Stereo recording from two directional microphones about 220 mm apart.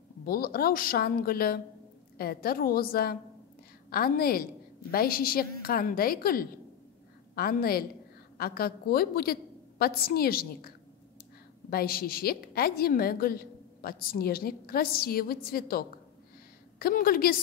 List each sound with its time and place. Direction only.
0.2 s a woman's voice: 45° left (ahead or behind)
11.7 s a woman's voice: 45° left (ahead or behind)